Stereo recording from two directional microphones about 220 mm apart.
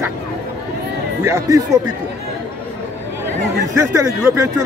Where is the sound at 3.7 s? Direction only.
15° right (ahead or behind).